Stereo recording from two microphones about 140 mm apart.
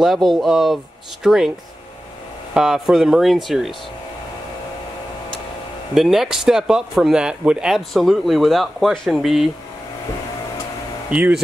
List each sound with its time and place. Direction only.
0.0 s speech: centre (ahead or behind)
2.5 s speech: 5° right (ahead or behind)
5.9 s speech: centre (ahead or behind)
11.1 s speech: 5° right (ahead or behind)